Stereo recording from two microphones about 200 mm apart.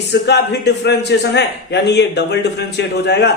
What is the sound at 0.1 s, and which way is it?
A man's voice, 55° left (ahead or behind).